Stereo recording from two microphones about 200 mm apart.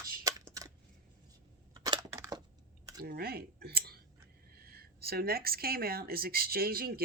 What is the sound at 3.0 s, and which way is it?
Speech, 50° right (ahead or behind).